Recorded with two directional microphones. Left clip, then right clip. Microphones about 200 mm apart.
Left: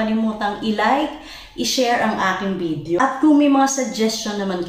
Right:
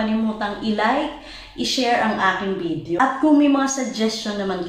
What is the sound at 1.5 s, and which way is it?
Speech, centre (ahead or behind).